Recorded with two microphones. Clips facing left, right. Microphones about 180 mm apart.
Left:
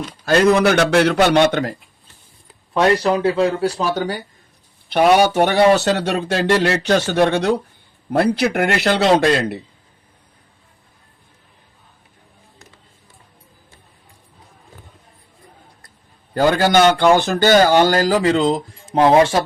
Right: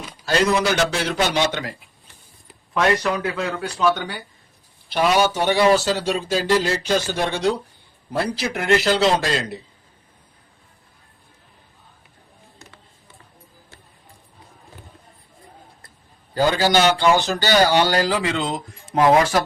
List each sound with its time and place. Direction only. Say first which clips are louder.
0.3 s speech: left 6 dB; 55° left (ahead or behind)
2.7 s speech: left 4 dB; 30° left (ahead or behind)
4.9 s speech: left 5 dB; 55° left (ahead or behind)
16.3 s a man's voice: left 3 dB; 55° left (ahead or behind); by 19.4 s 30° left (ahead or behind)